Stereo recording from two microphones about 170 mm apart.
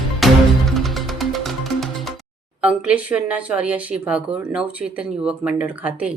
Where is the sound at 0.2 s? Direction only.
Centre (ahead or behind).